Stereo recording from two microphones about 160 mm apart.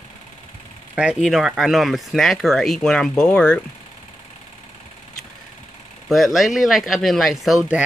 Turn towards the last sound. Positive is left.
turn(degrees=0)  # may be behind; listen again after turning